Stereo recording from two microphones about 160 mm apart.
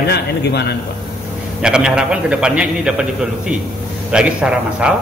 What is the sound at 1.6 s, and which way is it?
A man's voice, 5° right (ahead or behind).